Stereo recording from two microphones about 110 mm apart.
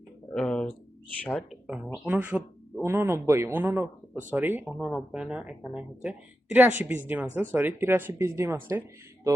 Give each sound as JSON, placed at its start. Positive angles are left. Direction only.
{"t": 0.3, "sound": "speech", "side_deg": 5}
{"t": 1.4, "sound": "speech", "side_deg": -5}
{"t": 4.6, "sound": "speech", "side_deg": -5}